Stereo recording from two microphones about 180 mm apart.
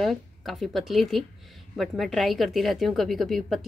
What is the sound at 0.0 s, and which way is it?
A woman's voice, centre (ahead or behind).